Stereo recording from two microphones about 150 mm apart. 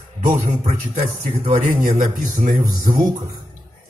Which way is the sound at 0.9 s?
40° right (ahead or behind).